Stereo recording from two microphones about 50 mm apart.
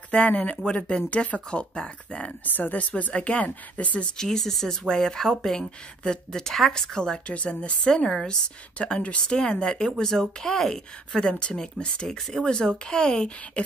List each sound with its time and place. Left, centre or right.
0.3 s speech: left
2.4 s speech: left
4.2 s speech: centre
7.2 s speech: left
7.8 s speech: centre
12.2 s speech: centre
12.4 s speech: centre